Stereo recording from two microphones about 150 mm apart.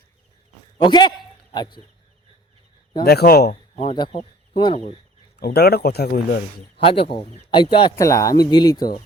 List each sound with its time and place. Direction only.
0.8 s speech: 30° left (ahead or behind)
3.0 s speech: 90° left
3.5 s speech: 45° left (ahead or behind)
3.9 s speech: 30° left (ahead or behind)
5.4 s speech: 90° left
6.7 s speech: 40° left (ahead or behind)
7.9 s speech: 20° left (ahead or behind)